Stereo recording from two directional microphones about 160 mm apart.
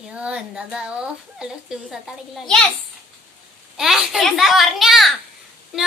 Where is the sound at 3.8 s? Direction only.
Centre (ahead or behind).